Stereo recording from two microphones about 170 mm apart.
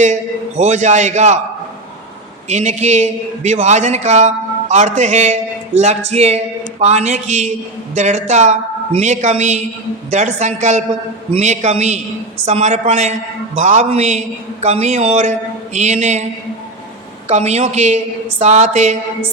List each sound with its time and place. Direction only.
0.0 s a man's voice: 45° right (ahead or behind)
2.5 s a man's voice: 45° right (ahead or behind)
17.2 s a man's voice: 40° right (ahead or behind)